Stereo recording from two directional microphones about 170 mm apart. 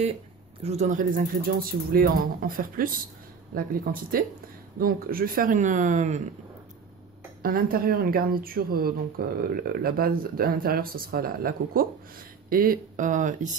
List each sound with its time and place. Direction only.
0.6 s speech: 40° right (ahead or behind)
7.4 s speech: 60° right (ahead or behind)